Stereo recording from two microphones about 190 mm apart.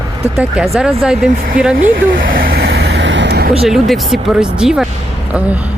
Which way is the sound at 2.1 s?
50° right (ahead or behind).